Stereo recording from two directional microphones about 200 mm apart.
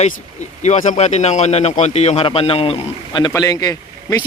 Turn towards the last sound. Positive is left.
turn(degrees=15)  # may be behind; listen again after turning